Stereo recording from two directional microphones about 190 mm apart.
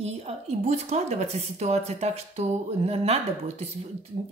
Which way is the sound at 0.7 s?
35° right (ahead or behind).